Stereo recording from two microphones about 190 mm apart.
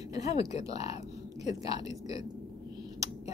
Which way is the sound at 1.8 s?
20° right (ahead or behind).